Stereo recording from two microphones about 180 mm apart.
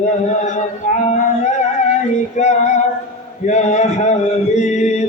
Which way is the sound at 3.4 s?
40° left (ahead or behind).